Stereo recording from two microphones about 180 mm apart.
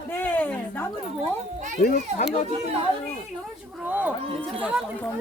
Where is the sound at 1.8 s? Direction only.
55° left (ahead or behind).